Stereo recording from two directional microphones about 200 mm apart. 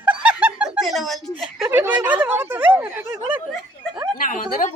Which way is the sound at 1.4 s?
5° right (ahead or behind).